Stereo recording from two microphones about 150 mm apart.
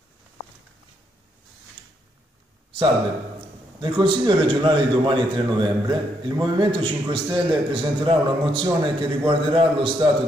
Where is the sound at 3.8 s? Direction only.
35° right (ahead or behind).